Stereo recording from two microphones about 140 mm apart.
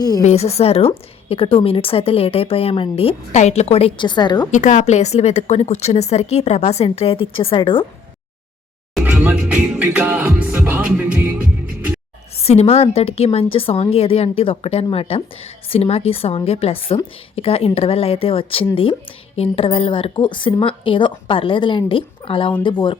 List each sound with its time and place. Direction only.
0.2 s a woman's voice: 50° left (ahead or behind); by 4.4 s 30° left (ahead or behind)
4.5 s a woman's voice: 60° left (ahead or behind); by 7.9 s 35° left (ahead or behind)
9.0 s music: 10° right (ahead or behind)
12.4 s a woman's voice: 45° left (ahead or behind)